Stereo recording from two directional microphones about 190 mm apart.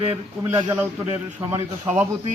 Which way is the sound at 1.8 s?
15° right (ahead or behind).